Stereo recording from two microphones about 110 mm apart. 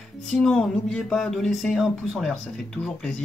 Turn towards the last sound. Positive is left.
turn(degrees=5)  # may be behind; listen again after turning